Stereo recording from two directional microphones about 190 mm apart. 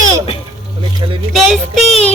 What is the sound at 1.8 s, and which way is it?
Child singing, 30° left (ahead or behind).